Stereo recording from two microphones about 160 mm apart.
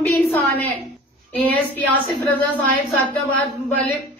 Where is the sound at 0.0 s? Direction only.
10° left (ahead or behind).